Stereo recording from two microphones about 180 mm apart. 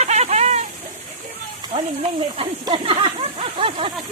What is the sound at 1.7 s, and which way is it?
Speech, 35° right (ahead or behind).